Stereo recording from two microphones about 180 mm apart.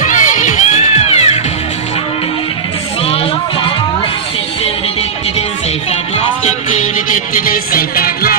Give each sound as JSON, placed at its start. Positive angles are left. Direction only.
{"t": 0.0, "sound": "music", "side_deg": 45}
{"t": 6.1, "sound": "music", "side_deg": 35}
{"t": 7.3, "sound": "music", "side_deg": 50}